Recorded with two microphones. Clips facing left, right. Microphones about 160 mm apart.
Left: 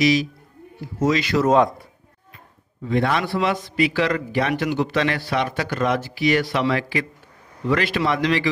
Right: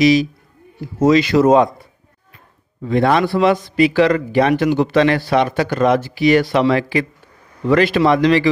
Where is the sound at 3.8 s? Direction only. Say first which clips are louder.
Right 6 dB; 30° right (ahead or behind).